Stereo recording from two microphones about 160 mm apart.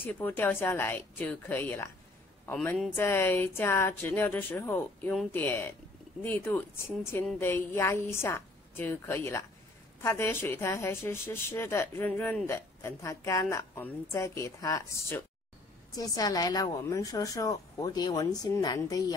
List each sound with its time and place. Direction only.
0.0 s a woman's voice: 10° left (ahead or behind)